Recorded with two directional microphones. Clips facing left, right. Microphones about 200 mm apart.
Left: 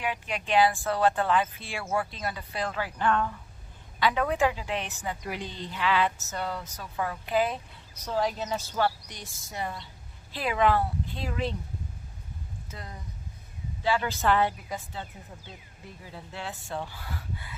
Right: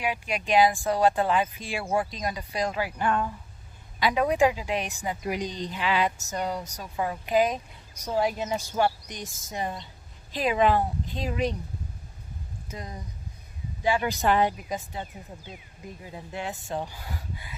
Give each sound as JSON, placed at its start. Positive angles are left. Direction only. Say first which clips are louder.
{"t": 0.0, "sound": "a woman's voice", "louder": "right 3 dB", "side_deg": -10}
{"t": 12.6, "sound": "a woman's voice", "louder": "right 6 dB", "side_deg": -20}